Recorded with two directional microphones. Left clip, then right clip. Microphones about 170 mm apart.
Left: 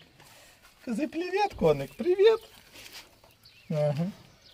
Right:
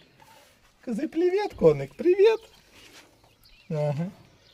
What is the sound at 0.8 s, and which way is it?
Speech, 45° right (ahead or behind).